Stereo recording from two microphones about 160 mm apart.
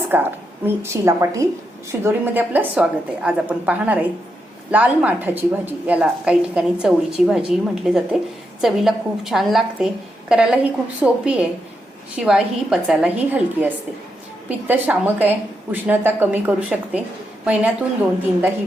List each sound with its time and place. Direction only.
0.1 s a woman's voice: 15° right (ahead or behind)
14.7 s a woman's voice: 10° right (ahead or behind)